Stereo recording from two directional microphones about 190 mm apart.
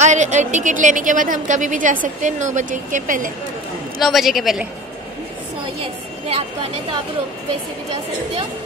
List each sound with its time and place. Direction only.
0.0 s a woman's voice: 40° right (ahead or behind)
4.0 s a woman's voice: centre (ahead or behind)